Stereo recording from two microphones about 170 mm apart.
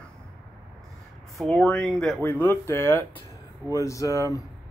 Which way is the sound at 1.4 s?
5° left (ahead or behind).